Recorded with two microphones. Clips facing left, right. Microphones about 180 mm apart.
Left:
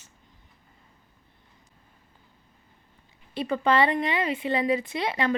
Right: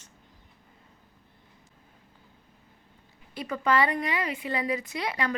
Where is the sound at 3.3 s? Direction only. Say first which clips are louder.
Left 3 dB; 25° left (ahead or behind).